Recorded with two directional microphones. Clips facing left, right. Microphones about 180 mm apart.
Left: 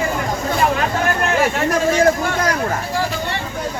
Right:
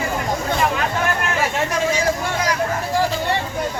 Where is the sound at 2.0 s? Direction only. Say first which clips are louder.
Left 5 dB; 55° left (ahead or behind).